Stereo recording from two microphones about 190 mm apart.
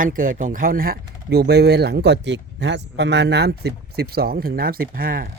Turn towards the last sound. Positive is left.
turn(degrees=-50)  # may be behind; listen again after turning